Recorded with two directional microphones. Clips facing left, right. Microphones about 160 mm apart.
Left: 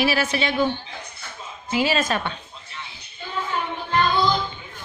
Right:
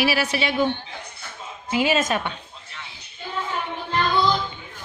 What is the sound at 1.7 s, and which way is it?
Speech, 15° right (ahead or behind).